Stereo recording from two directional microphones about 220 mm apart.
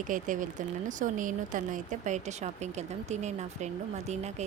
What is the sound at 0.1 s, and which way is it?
Speech, 35° right (ahead or behind).